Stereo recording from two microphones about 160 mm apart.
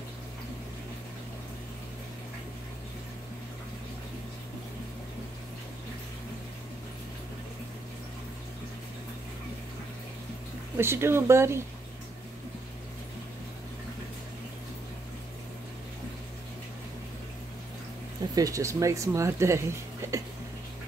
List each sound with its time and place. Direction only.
10.8 s speech: 15° right (ahead or behind)
18.3 s speech: 20° right (ahead or behind)